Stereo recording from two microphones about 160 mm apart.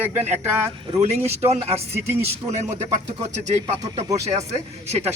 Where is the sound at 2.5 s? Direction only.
45° right (ahead or behind).